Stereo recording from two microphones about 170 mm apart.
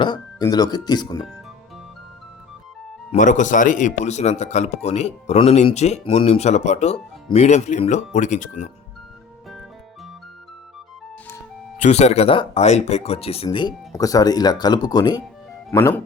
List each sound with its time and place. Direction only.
0.0 s speech: 25° left (ahead or behind)
3.1 s speech: 45° left (ahead or behind)
11.8 s speech: 40° left (ahead or behind); by 16.0 s 15° left (ahead or behind)